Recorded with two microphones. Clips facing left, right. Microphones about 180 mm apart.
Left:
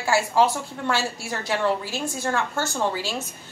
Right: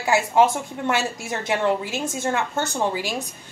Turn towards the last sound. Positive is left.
turn(degrees=-15)  # may be behind; listen again after turning